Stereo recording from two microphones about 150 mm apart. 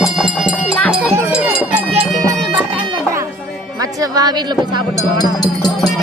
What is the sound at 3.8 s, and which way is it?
Speech, 25° right (ahead or behind).